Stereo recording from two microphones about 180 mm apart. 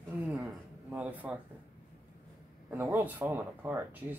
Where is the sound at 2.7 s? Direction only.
10° right (ahead or behind).